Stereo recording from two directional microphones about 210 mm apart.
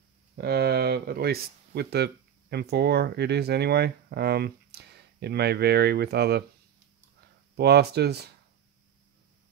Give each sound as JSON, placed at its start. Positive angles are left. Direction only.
{"t": 0.4, "sound": "speech", "side_deg": -50}
{"t": 7.5, "sound": "speech", "side_deg": -50}